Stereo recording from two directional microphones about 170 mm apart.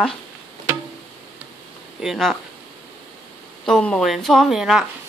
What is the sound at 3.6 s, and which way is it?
Speech, 5° left (ahead or behind).